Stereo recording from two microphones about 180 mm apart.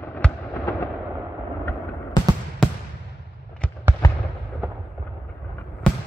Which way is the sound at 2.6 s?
Centre (ahead or behind).